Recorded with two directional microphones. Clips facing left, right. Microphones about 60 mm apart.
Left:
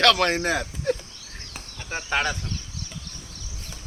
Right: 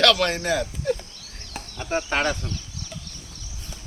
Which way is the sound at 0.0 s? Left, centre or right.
Left.